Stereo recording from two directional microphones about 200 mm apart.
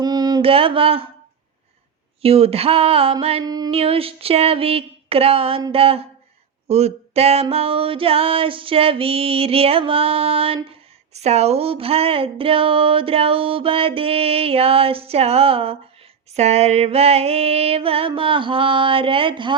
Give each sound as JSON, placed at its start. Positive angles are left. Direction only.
{"t": 0.0, "sound": "mantra", "side_deg": -20}
{"t": 2.2, "sound": "speech", "side_deg": -30}